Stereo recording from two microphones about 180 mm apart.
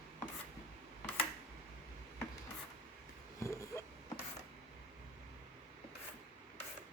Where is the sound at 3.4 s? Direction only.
15° left (ahead or behind).